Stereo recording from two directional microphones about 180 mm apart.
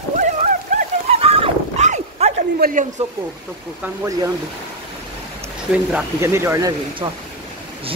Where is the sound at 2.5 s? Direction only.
50° right (ahead or behind).